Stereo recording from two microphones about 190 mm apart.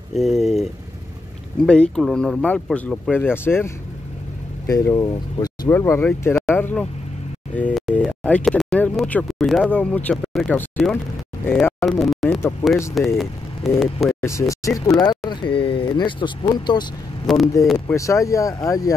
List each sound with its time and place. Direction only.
0.1 s speech: centre (ahead or behind)
14.5 s speech: 15° left (ahead or behind)
17.3 s speech: centre (ahead or behind)
17.7 s speech: 15° left (ahead or behind)